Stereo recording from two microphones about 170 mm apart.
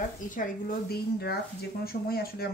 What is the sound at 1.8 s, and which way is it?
Speech, 60° left (ahead or behind).